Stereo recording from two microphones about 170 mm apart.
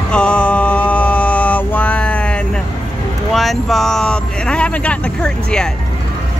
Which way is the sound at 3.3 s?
Centre (ahead or behind).